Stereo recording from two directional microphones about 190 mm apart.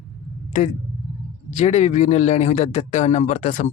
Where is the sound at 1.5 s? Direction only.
35° left (ahead or behind).